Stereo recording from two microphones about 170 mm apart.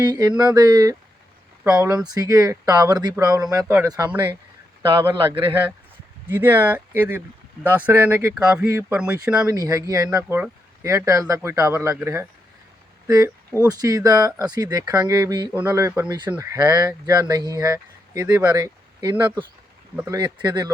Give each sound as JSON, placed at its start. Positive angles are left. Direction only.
{"t": 0.0, "sound": "speech", "side_deg": -25}
{"t": 2.0, "sound": "a man's voice", "side_deg": -20}
{"t": 6.2, "sound": "speech", "side_deg": -10}
{"t": 9.5, "sound": "speech", "side_deg": -20}
{"t": 15.5, "sound": "speech", "side_deg": -15}